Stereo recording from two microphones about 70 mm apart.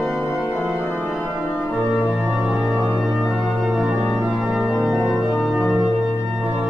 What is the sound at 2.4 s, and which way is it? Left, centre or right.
Music, right.